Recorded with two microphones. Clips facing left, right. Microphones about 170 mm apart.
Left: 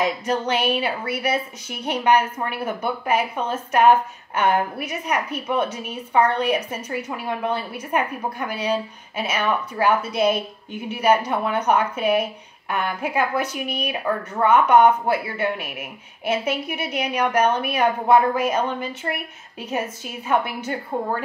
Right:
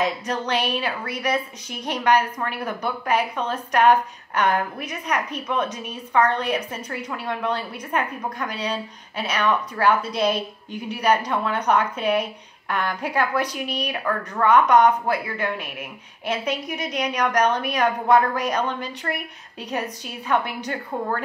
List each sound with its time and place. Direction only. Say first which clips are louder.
0.0 s speech: left 2 dB; 10° left (ahead or behind)
14.5 s speech: left 1 dB; 10° left (ahead or behind)
16.3 s speech: left 2 dB; 10° left (ahead or behind)
20.2 s speech: left 1 dB; 10° left (ahead or behind)